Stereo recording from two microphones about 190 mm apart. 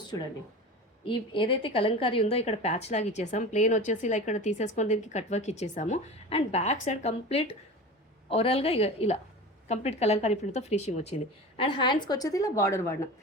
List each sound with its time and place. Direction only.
1.0 s a woman's voice: 25° left (ahead or behind)